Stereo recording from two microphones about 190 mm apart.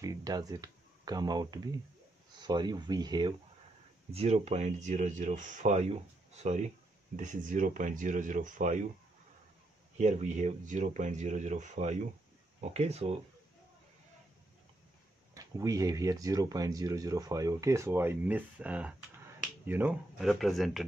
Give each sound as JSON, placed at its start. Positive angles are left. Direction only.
{"t": 0.0, "sound": "speech", "side_deg": -20}
{"t": 4.1, "sound": "speech", "side_deg": -35}
{"t": 9.9, "sound": "speech", "side_deg": -40}
{"t": 15.3, "sound": "speech", "side_deg": -20}